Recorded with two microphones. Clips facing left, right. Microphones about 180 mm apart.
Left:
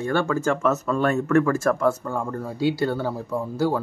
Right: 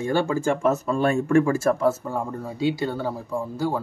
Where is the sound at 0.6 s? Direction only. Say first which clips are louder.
Even; 30° right (ahead or behind).